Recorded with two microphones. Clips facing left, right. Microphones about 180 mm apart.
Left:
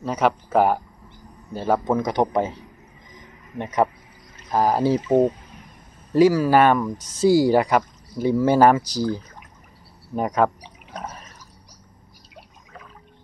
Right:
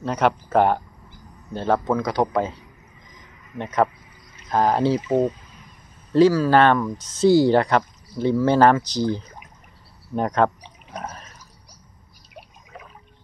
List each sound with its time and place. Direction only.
0.0 s speech: 5° left (ahead or behind)
1.9 s speech: 20° left (ahead or behind)
3.5 s speech: 15° left (ahead or behind)
6.1 s speech: 15° left (ahead or behind)
10.1 s speech: 5° left (ahead or behind)
10.9 s drip: 5° right (ahead or behind)